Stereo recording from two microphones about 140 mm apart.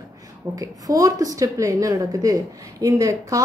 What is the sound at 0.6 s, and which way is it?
A woman's voice, 25° right (ahead or behind).